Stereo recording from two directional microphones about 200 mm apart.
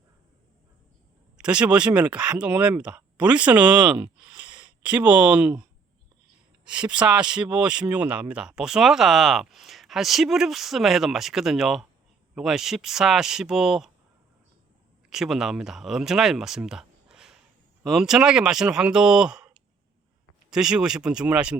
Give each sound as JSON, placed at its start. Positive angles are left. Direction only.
{"t": 1.4, "sound": "speech", "side_deg": -5}
{"t": 4.4, "sound": "a sound", "side_deg": -5}
{"t": 6.7, "sound": "speech", "side_deg": -5}
{"t": 15.1, "sound": "speech", "side_deg": 0}